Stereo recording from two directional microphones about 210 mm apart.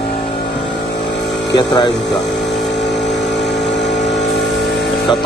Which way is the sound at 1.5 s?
20° left (ahead or behind).